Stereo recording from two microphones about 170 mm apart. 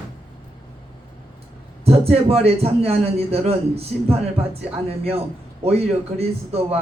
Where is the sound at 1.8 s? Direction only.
35° right (ahead or behind).